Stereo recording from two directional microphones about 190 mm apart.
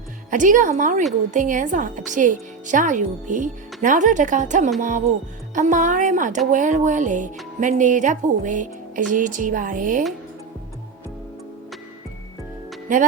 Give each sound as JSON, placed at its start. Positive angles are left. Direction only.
{"t": 0.3, "sound": "speech", "side_deg": -45}